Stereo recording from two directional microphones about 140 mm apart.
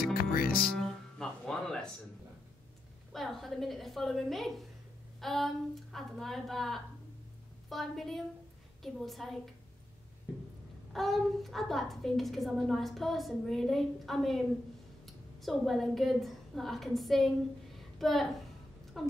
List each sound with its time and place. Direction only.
0.1 s music: 90° left
0.7 s guitar: 5° left (ahead or behind)
3.1 s a woman's voice: centre (ahead or behind)
10.9 s a woman's voice: centre (ahead or behind)
15.4 s a woman's voice: centre (ahead or behind)
17.7 s a sound: centre (ahead or behind)
18.9 s speech: centre (ahead or behind)